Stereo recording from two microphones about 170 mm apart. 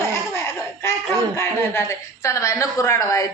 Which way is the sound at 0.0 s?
15° left (ahead or behind).